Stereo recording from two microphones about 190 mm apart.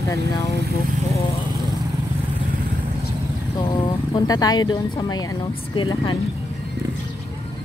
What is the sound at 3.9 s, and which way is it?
Speech, 20° left (ahead or behind).